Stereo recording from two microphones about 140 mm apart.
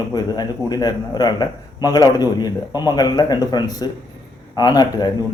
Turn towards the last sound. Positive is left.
turn(degrees=30)  # may be behind; listen again after turning